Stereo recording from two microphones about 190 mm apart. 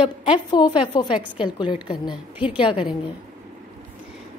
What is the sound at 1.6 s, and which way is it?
Speech, 25° left (ahead or behind).